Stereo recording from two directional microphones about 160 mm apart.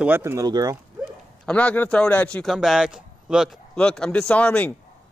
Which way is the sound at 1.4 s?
10° left (ahead or behind).